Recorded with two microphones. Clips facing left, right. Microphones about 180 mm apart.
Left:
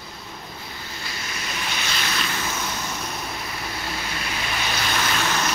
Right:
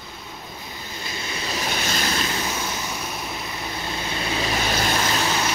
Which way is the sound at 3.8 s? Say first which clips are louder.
Right 4 dB; 20° right (ahead or behind).